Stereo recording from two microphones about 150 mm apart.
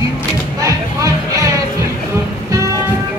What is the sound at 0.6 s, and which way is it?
Music, 20° right (ahead or behind).